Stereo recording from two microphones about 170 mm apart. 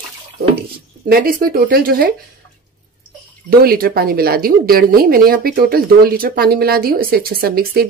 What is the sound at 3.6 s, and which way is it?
A woman's voice, 65° right (ahead or behind).